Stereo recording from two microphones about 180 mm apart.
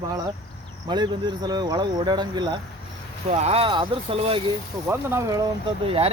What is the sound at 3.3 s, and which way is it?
Speech, 35° right (ahead or behind).